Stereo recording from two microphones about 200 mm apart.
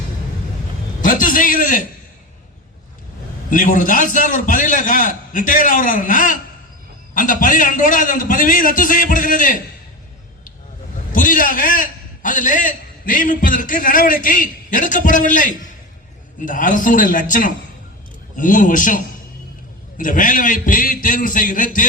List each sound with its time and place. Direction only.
1.0 s a sound: 40° left (ahead or behind)
3.5 s a man's voice: 40° left (ahead or behind)
11.1 s a man's voice: 40° left (ahead or behind)